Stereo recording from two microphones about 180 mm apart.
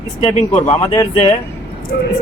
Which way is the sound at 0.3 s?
40° left (ahead or behind).